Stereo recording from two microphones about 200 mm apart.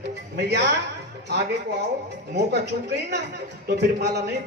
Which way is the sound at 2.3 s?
55° right (ahead or behind).